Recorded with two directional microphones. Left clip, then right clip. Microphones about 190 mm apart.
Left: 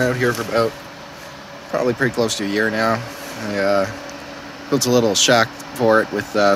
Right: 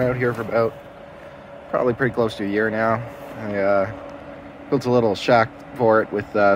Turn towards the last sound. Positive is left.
turn(degrees=5)  # may be behind; listen again after turning